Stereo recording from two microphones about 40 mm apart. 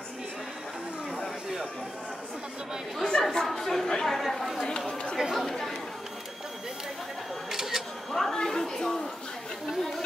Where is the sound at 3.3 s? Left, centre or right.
Centre.